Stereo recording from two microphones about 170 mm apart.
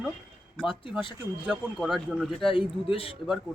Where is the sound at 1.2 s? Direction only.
10° right (ahead or behind).